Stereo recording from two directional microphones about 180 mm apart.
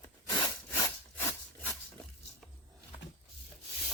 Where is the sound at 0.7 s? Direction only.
10° left (ahead or behind).